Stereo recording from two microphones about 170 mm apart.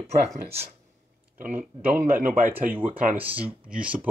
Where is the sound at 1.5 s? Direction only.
10° right (ahead or behind).